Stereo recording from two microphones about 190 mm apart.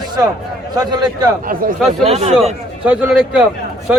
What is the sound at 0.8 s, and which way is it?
Speech, 20° right (ahead or behind).